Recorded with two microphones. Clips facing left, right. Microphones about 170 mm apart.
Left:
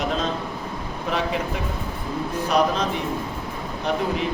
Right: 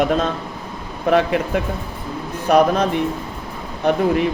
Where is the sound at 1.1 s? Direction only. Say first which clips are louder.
Right 9 dB; 60° right (ahead or behind).